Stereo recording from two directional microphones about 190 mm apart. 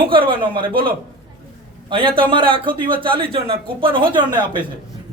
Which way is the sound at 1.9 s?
25° right (ahead or behind).